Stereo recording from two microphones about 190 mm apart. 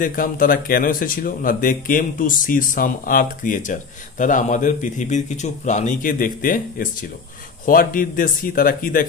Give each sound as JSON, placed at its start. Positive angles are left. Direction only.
{"t": 0.0, "sound": "speech", "side_deg": 45}